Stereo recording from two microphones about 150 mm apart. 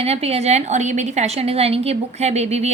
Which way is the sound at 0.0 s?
45° right (ahead or behind).